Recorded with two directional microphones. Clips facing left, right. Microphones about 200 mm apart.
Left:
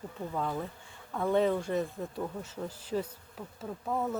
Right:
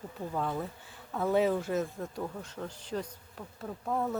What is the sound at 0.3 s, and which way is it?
Speech, centre (ahead or behind).